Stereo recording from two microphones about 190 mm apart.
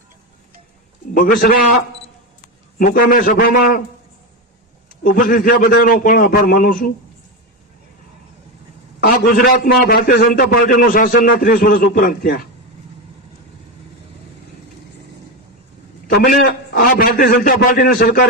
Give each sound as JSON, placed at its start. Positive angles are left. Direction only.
{"t": 1.1, "sound": "a man's voice", "side_deg": 45}
{"t": 2.7, "sound": "a man's voice", "side_deg": 50}
{"t": 5.0, "sound": "a man's voice", "side_deg": 45}
{"t": 9.0, "sound": "a man's voice", "side_deg": 50}
{"t": 16.0, "sound": "a man's voice", "side_deg": 45}